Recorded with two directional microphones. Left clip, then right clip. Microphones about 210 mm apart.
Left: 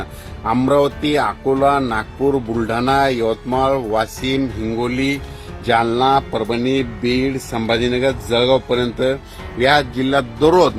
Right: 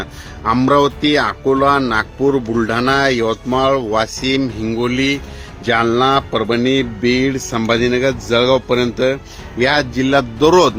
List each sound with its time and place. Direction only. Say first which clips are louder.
0.4 s speech: right 2 dB; 45° right (ahead or behind)